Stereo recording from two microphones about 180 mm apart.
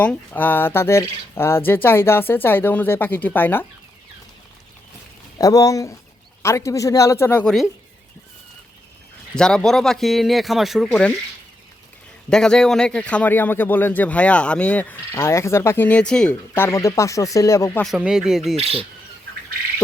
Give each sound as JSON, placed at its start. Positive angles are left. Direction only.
{"t": 0.0, "sound": "a man's voice", "side_deg": 10}
{"t": 5.4, "sound": "a man's voice", "side_deg": 20}
{"t": 9.3, "sound": "speech", "side_deg": 5}
{"t": 12.3, "sound": "a man's voice", "side_deg": 5}
{"t": 17.8, "sound": "speech", "side_deg": -5}
{"t": 18.5, "sound": "speech", "side_deg": -35}